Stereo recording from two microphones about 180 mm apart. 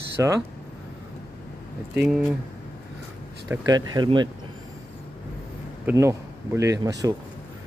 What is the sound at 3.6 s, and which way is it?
Speech, 25° right (ahead or behind).